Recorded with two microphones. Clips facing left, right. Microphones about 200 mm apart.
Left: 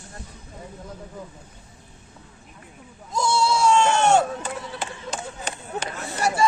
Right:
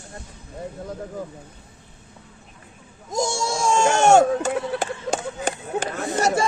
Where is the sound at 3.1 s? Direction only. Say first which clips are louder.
Left 2 dB; 45° right (ahead or behind).